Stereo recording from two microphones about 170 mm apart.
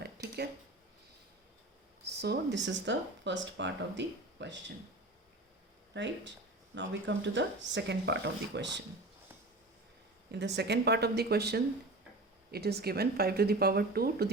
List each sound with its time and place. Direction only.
0.2 s a sound: 75° right (ahead or behind)
2.0 s speech: 75° right (ahead or behind); by 4.6 s 90° right
5.9 s speech: 90° right
10.3 s speech: 85° right; by 14.3 s 65° right (ahead or behind)